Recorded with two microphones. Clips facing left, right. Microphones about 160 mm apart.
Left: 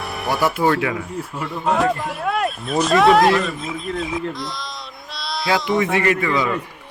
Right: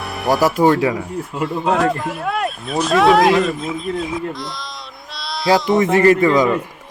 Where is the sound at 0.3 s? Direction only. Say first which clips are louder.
Right 5 dB; 40° right (ahead or behind).